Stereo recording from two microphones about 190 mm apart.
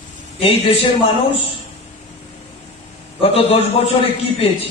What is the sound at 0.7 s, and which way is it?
Speech, 30° left (ahead or behind).